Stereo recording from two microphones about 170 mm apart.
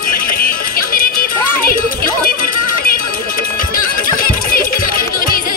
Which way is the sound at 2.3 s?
60° left (ahead or behind).